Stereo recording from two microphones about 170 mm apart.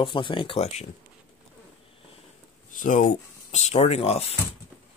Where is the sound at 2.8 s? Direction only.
50° left (ahead or behind).